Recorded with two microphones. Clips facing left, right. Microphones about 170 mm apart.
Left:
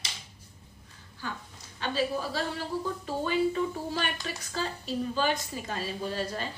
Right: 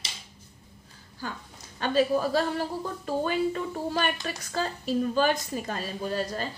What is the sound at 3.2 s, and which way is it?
A woman's voice, 50° right (ahead or behind).